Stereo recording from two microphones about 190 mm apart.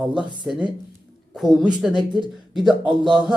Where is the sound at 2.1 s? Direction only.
25° right (ahead or behind).